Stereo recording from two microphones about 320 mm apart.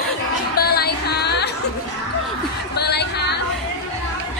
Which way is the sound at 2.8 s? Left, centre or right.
Left.